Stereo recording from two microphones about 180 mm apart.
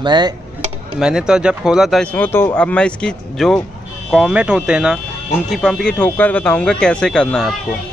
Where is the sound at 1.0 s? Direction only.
5° right (ahead or behind).